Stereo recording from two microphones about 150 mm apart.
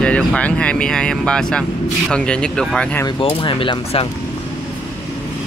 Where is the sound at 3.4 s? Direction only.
35° left (ahead or behind).